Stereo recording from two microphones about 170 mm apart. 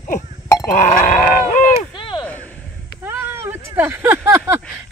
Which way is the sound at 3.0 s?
10° right (ahead or behind).